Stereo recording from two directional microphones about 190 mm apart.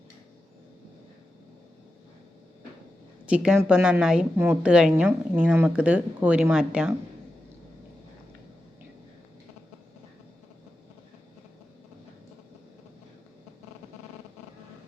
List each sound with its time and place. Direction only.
3.2 s a woman's voice: 5° right (ahead or behind)